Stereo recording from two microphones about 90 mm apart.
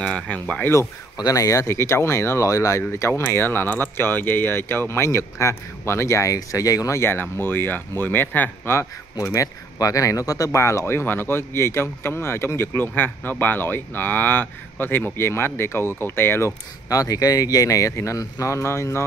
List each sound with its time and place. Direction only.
0.0 s speech: 10° left (ahead or behind)
1.1 s speech: 40° left (ahead or behind)
2.8 s speech: 25° left (ahead or behind); by 7.0 s 40° left (ahead or behind)
7.0 s speech: 25° left (ahead or behind)
9.2 s speech: 35° left (ahead or behind)